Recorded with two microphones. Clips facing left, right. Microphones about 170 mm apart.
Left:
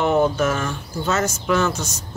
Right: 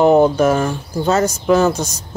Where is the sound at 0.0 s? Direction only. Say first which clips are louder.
Right 7 dB; 35° right (ahead or behind).